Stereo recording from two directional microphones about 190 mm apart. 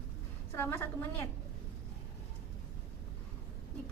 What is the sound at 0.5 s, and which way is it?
Speech, 10° left (ahead or behind).